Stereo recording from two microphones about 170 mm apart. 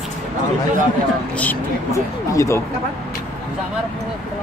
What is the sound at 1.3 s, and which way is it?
Speech, 10° left (ahead or behind).